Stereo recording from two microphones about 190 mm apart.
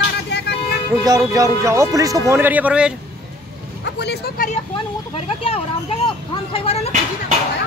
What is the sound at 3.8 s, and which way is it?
Speech, 60° left (ahead or behind).